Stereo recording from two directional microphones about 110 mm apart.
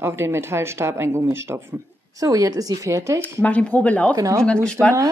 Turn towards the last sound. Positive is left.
turn(degrees=10)  # may be behind; listen again after turning